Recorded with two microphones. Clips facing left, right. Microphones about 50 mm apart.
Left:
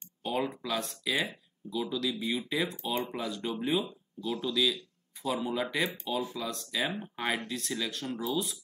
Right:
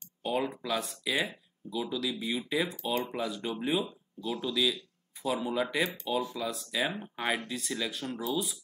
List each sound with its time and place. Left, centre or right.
0.2 s speech: centre